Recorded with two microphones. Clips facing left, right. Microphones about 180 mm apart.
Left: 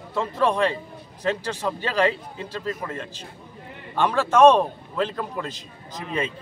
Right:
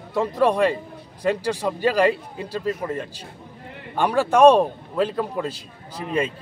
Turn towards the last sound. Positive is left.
turn(degrees=-10)  # may be behind; listen again after turning